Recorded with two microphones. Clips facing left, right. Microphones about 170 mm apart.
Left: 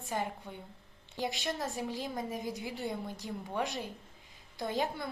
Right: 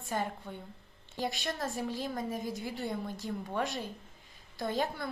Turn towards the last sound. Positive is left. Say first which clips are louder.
# right 1 dB
turn(degrees=15)  # may be behind; listen again after turning